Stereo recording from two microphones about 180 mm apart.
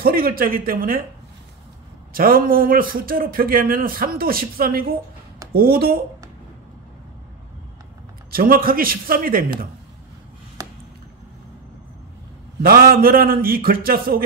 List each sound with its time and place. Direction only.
0.0 s a man's voice: 55° right (ahead or behind)
2.1 s a man's voice: 55° right (ahead or behind)
8.3 s a man's voice: 55° right (ahead or behind)
10.6 s a sound: 20° right (ahead or behind)
12.6 s a man's voice: 55° right (ahead or behind)